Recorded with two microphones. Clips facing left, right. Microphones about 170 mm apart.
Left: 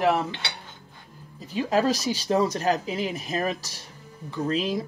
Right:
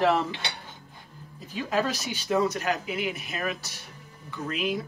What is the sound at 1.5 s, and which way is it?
Speech, 35° left (ahead or behind).